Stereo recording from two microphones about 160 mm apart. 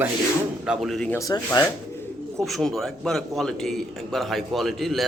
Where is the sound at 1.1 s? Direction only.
20° left (ahead or behind).